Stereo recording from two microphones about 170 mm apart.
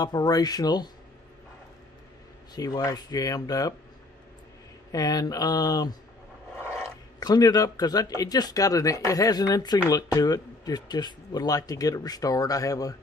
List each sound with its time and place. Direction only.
0.0 s speech: 20° left (ahead or behind)
2.5 s speech: 20° left (ahead or behind)
4.9 s speech: 20° left (ahead or behind)
7.2 s speech: 25° left (ahead or behind)